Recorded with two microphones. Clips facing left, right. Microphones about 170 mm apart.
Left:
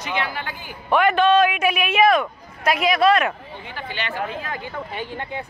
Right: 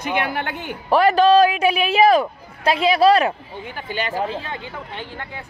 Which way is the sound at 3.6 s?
45° right (ahead or behind).